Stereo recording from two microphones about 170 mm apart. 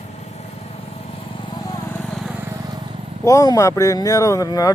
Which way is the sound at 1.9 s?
Centre (ahead or behind).